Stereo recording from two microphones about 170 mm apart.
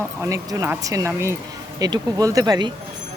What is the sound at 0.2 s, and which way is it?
Speech, 20° right (ahead or behind).